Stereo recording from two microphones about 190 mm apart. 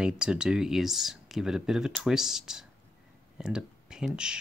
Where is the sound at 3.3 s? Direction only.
5° right (ahead or behind).